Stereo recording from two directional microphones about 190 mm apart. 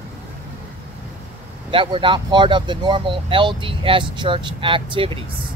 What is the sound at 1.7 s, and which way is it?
Speech, 25° right (ahead or behind).